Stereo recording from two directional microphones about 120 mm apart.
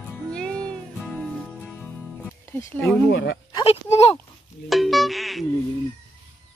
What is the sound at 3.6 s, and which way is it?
Speech, 55° left (ahead or behind).